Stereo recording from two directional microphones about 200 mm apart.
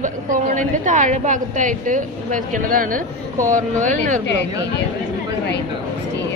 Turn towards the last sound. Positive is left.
turn(degrees=60)  # may be behind; listen again after turning